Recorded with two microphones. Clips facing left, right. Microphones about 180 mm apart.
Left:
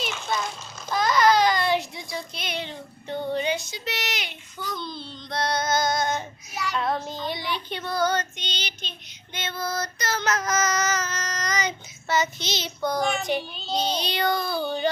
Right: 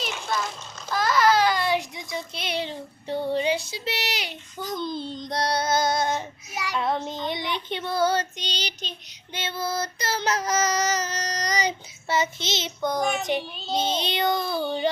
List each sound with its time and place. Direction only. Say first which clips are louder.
0.0 s a sound: even; centre (ahead or behind)
0.9 s child singing: left 1 dB; 5° right (ahead or behind); by 6.6 s 30° right (ahead or behind)
6.6 s child singing: even; 15° right (ahead or behind)
14.4 s child singing: even; centre (ahead or behind)